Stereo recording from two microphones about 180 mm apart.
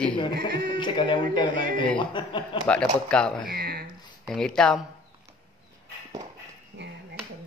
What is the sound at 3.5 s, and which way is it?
Speech, 60° right (ahead or behind).